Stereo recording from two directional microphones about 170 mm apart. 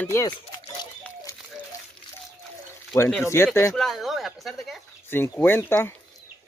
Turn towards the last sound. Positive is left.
turn(degrees=10)  # may be behind; listen again after turning